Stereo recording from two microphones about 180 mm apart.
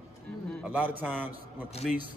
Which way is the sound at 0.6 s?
10° right (ahead or behind).